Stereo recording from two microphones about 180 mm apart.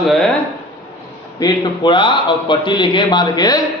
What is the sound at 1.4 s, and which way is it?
A man's voice, 25° left (ahead or behind).